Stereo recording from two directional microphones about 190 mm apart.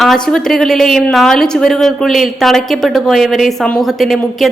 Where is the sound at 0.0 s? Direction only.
Centre (ahead or behind).